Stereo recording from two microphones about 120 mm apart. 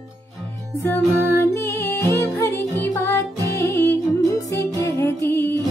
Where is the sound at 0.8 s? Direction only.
20° left (ahead or behind).